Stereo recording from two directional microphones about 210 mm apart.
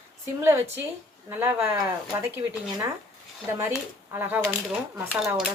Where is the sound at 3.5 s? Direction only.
10° right (ahead or behind).